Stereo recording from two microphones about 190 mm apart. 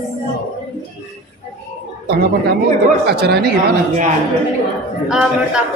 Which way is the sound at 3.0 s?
55° right (ahead or behind).